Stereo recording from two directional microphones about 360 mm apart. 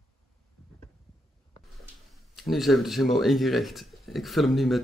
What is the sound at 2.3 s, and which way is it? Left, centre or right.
Speech, centre.